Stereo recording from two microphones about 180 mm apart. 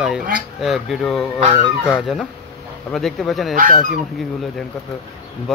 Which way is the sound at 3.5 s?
50° right (ahead or behind).